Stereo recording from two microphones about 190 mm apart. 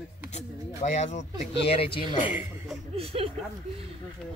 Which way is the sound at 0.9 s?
35° left (ahead or behind).